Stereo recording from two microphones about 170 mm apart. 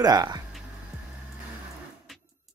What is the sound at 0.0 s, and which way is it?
Speech, 20° right (ahead or behind).